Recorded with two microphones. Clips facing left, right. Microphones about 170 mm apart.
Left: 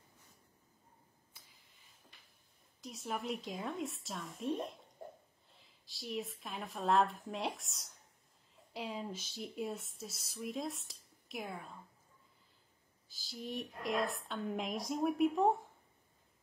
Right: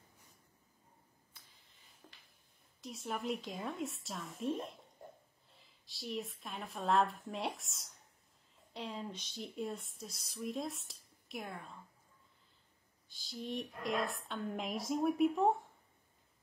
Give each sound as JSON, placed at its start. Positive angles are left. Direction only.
{"t": 2.0, "sound": "a sound", "side_deg": -90}
{"t": 2.8, "sound": "speech", "side_deg": 0}
{"t": 13.1, "sound": "speech", "side_deg": 0}